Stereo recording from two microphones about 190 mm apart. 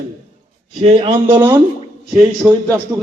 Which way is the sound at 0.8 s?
35° right (ahead or behind).